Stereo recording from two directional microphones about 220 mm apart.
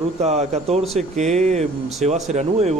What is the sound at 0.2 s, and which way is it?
Speech, 30° right (ahead or behind).